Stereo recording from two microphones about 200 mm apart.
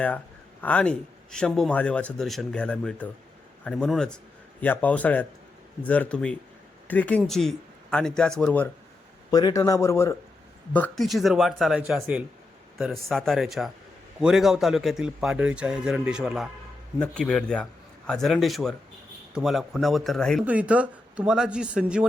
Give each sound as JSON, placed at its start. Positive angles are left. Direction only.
{"t": 0.6, "sound": "speech", "side_deg": 5}
{"t": 9.3, "sound": "speech", "side_deg": 20}